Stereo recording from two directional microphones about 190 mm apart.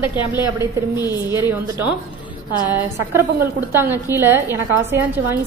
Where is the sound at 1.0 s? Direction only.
15° right (ahead or behind).